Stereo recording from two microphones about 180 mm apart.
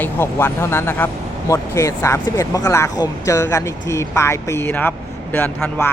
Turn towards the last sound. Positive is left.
turn(degrees=10)  # may be behind; listen again after turning